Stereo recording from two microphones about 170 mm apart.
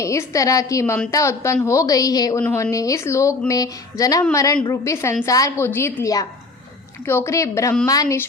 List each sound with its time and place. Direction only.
0.0 s a woman's voice: 20° left (ahead or behind)
7.3 s a woman's voice: 15° left (ahead or behind)